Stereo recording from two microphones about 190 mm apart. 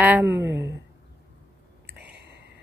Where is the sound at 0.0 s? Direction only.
10° right (ahead or behind).